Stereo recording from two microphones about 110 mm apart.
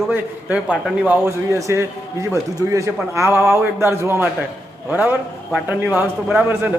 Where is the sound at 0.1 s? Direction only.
15° right (ahead or behind).